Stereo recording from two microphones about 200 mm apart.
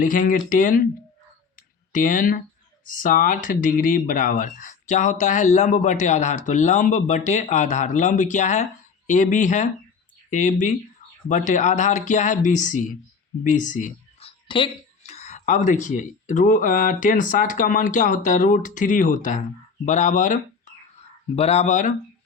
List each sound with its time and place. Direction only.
0.0 s speech: 40° left (ahead or behind)
1.5 s a sound: 40° left (ahead or behind)
2.8 s speech: 40° left (ahead or behind)